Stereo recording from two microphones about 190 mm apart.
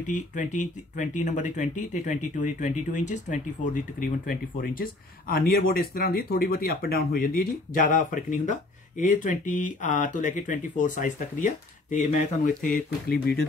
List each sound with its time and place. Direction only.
0.0 s speech: 40° left (ahead or behind); by 13.5 s 55° left (ahead or behind)